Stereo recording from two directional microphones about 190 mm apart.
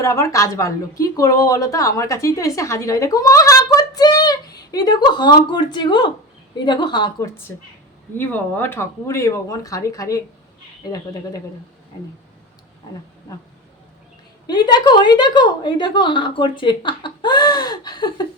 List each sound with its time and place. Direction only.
0.0 s a woman's voice: 15° left (ahead or behind)
8.1 s speech: 10° left (ahead or behind)
14.4 s a woman's voice: 20° left (ahead or behind)